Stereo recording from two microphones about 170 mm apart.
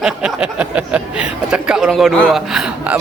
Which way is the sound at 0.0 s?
5° right (ahead or behind).